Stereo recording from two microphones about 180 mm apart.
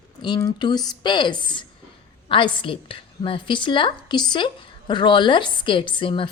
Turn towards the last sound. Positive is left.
turn(degrees=30)  # may be behind; listen again after turning